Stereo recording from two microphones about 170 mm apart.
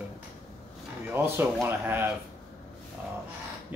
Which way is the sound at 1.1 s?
10° right (ahead or behind).